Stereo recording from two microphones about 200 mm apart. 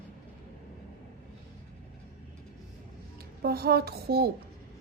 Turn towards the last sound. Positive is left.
turn(degrees=-50)  # may be behind; listen again after turning